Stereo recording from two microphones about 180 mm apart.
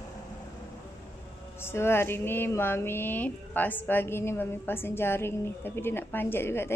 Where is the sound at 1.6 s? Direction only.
15° left (ahead or behind).